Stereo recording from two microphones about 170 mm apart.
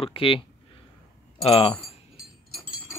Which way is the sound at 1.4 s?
35° left (ahead or behind).